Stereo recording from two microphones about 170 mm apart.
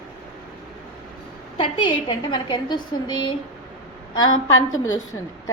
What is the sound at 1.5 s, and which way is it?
A woman's voice, 30° left (ahead or behind).